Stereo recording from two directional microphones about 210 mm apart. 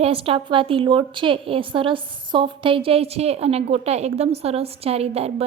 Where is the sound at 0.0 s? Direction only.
25° right (ahead or behind).